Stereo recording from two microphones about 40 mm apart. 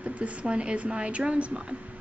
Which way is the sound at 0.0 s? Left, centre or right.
Right.